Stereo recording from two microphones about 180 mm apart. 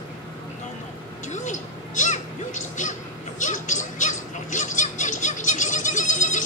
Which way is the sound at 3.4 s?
45° left (ahead or behind).